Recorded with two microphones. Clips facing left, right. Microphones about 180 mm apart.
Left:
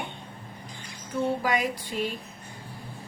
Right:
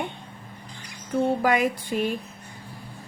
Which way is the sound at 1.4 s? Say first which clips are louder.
Right 5 dB; 50° right (ahead or behind).